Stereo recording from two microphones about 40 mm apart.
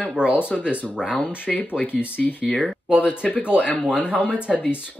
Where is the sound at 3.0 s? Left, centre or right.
Left.